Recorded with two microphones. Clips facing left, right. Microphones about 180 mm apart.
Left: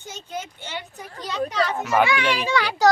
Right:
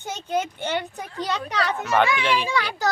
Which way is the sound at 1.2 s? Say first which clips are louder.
Left 2 dB; 65° right (ahead or behind).